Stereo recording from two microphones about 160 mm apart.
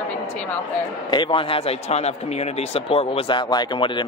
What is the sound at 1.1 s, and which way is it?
Speech, 30° left (ahead or behind).